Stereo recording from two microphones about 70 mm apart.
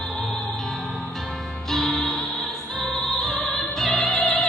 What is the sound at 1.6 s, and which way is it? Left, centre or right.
Music, centre.